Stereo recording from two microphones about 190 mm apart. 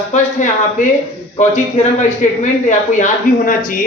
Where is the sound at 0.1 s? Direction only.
40° left (ahead or behind).